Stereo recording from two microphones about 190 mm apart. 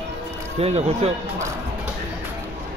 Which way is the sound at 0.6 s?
30° right (ahead or behind).